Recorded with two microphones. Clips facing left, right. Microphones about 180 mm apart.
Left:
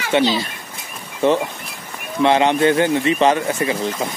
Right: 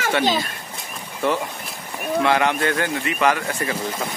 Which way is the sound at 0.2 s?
50° right (ahead or behind).